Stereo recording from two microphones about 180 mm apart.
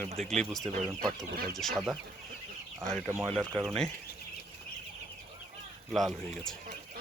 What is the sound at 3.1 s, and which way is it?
Speech, 15° right (ahead or behind).